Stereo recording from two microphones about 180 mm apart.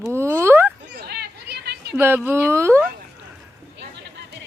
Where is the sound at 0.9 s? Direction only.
65° right (ahead or behind).